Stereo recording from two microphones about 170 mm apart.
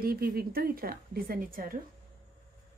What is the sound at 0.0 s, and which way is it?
Speech, 60° right (ahead or behind).